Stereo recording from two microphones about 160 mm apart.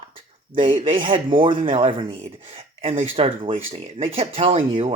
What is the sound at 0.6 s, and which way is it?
Speech, 35° right (ahead or behind).